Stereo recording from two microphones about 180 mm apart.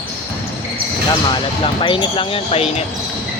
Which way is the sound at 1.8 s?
30° left (ahead or behind).